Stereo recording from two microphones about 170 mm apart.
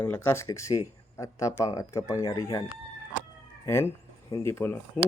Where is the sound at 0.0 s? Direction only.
15° left (ahead or behind).